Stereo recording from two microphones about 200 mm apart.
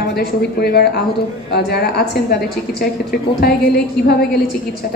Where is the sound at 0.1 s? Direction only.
50° left (ahead or behind).